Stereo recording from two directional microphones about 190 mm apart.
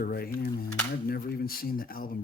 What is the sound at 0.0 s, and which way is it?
Speech, 50° left (ahead or behind).